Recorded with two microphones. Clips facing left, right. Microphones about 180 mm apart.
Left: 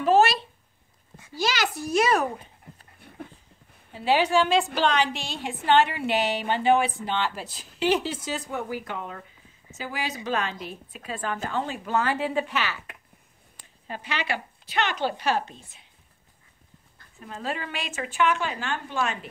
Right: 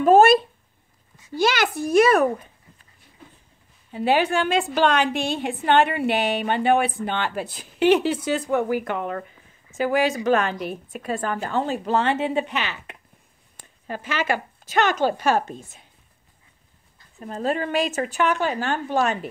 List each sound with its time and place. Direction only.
0.0 s a woman's voice: 50° right (ahead or behind)
3.0 s a sound: 60° left (ahead or behind)
3.9 s a woman's voice: 55° right (ahead or behind); by 12.9 s 20° right (ahead or behind)
13.6 s a woman's voice: 50° right (ahead or behind)
17.2 s a woman's voice: 40° right (ahead or behind)